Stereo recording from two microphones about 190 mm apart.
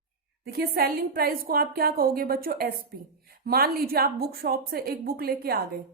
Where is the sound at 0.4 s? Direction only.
55° right (ahead or behind).